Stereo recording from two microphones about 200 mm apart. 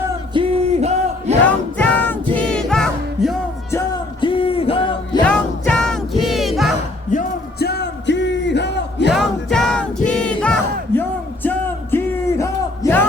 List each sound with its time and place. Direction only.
0.3 s a sound: 30° right (ahead or behind)
1.5 s music: 10° left (ahead or behind)
3.7 s music: 20° left (ahead or behind)
5.2 s music: 5° left (ahead or behind)
7.1 s a sound: 45° left (ahead or behind)
9.1 s music: centre (ahead or behind)